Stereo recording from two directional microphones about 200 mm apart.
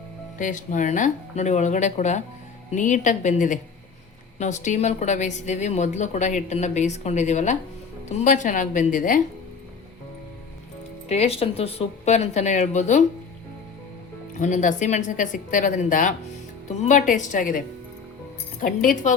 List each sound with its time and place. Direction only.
0.3 s a woman's voice: 40° left (ahead or behind)
11.1 s a woman's voice: 30° left (ahead or behind)
14.3 s a woman's voice: 40° left (ahead or behind)
18.6 s speech: 45° left (ahead or behind)